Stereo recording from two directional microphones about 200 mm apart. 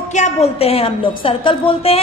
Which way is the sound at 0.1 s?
35° left (ahead or behind).